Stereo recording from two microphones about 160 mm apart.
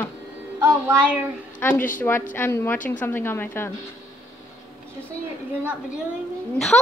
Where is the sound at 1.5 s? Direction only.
10° left (ahead or behind).